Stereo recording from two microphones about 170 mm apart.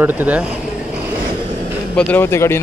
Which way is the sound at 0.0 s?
10° right (ahead or behind).